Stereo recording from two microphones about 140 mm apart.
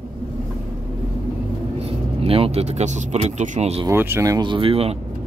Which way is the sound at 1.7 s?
45° right (ahead or behind).